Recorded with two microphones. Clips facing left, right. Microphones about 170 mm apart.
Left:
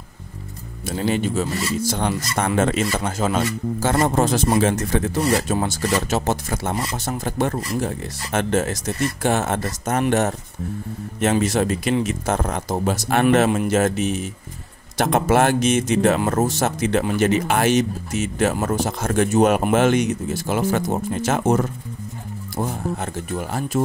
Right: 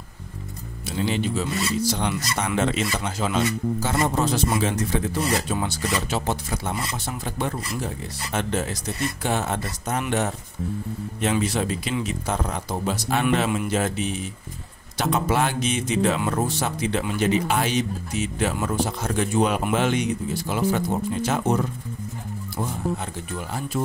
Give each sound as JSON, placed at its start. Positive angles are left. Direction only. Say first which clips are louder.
{"t": 0.8, "sound": "speech", "louder": "left 3 dB", "side_deg": 50}
{"t": 23.3, "sound": "speech", "louder": "left 5 dB", "side_deg": 45}